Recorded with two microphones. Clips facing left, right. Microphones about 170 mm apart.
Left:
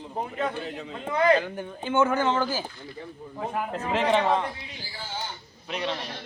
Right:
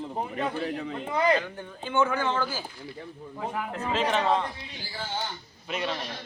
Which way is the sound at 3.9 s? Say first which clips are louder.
Left 2 dB; 15° left (ahead or behind).